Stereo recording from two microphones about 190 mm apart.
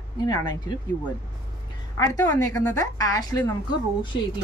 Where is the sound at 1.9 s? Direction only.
15° left (ahead or behind).